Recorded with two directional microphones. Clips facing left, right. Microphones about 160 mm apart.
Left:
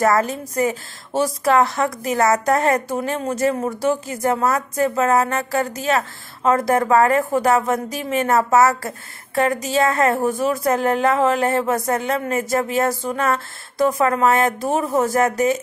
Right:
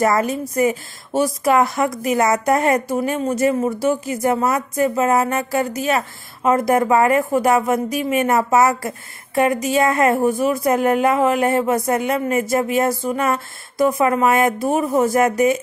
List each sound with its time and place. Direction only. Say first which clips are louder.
0.0 s a woman's voice: even; 15° right (ahead or behind)